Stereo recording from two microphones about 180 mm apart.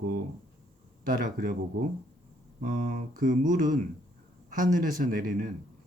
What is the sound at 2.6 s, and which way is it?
Speech, 50° right (ahead or behind).